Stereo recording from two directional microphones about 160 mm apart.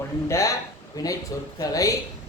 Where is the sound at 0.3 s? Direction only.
20° left (ahead or behind).